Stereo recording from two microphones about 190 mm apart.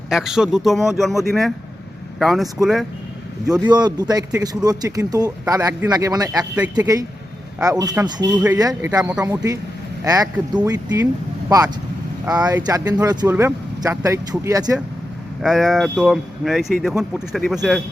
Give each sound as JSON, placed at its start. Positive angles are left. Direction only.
{"t": 0.1, "sound": "speech", "side_deg": -5}
{"t": 3.7, "sound": "speech", "side_deg": -20}
{"t": 15.4, "sound": "speech", "side_deg": 0}